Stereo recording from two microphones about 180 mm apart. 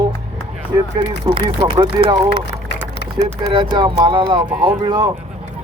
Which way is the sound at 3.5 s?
25° right (ahead or behind).